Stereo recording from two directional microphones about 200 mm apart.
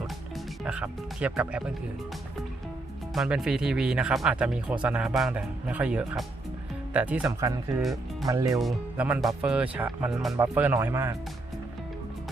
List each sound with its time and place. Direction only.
0.6 s speech: 5° right (ahead or behind)
3.2 s speech: 5° right (ahead or behind)
7.8 s speech: centre (ahead or behind)
8.3 s speech: 15° right (ahead or behind)
8.5 s speech: 5° right (ahead or behind)